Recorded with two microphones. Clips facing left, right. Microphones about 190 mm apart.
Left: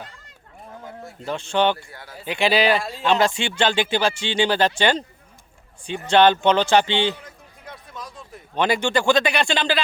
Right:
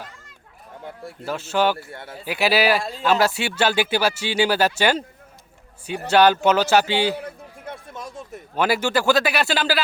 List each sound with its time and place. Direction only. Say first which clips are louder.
1.2 s speech: even; 5° right (ahead or behind)
1.9 s speech: right 5 dB; 25° right (ahead or behind)
2.2 s speech: even; 5° right (ahead or behind)
6.1 s speech: even; 5° right (ahead or behind)
7.2 s a sound: right 10 dB; 60° right (ahead or behind)
7.7 s a sound: right 3 dB; 25° right (ahead or behind)
8.5 s speech: even; 5° right (ahead or behind)